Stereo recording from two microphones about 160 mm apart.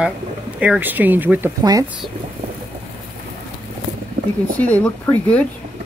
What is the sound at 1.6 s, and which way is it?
Speech, 25° right (ahead or behind).